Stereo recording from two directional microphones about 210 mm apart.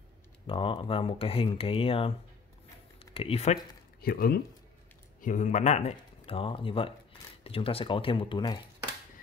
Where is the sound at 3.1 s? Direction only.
25° left (ahead or behind).